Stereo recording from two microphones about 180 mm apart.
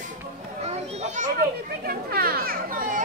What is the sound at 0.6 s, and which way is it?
Children playing, 40° right (ahead or behind).